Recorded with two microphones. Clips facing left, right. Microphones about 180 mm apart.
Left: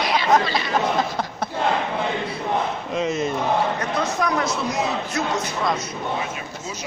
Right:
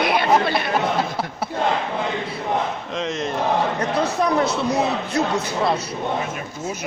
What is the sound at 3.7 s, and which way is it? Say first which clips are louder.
A man's voice: right 3 dB; 30° right (ahead or behind).